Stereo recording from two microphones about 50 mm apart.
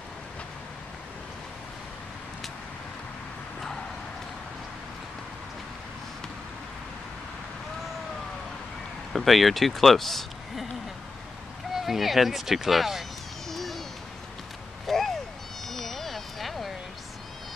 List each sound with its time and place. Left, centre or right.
9.1 s speech: centre
11.7 s speech: centre
13.5 s hoot: centre
14.9 s a sound: centre
15.6 s cat: centre